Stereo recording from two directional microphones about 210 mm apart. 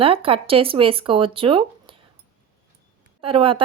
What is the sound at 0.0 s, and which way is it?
Speech, 25° right (ahead or behind).